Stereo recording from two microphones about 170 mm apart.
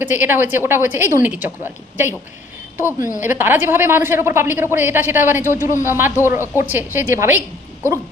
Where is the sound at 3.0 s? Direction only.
50° left (ahead or behind).